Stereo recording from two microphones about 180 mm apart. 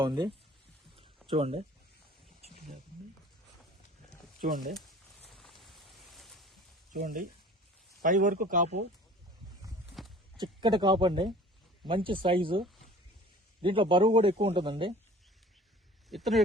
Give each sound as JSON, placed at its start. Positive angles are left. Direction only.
{"t": 0.0, "sound": "speech", "side_deg": -25}
{"t": 4.4, "sound": "speech", "side_deg": -50}
{"t": 5.3, "sound": "a sound", "side_deg": 0}
{"t": 6.9, "sound": "speech", "side_deg": -50}
{"t": 10.3, "sound": "speech", "side_deg": -25}
{"t": 16.0, "sound": "speech", "side_deg": 0}